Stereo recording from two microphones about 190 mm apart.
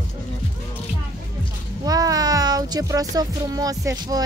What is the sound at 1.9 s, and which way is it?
Speech, 20° right (ahead or behind).